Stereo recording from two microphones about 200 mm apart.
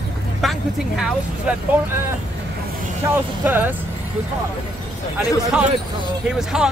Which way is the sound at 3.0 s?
15° right (ahead or behind).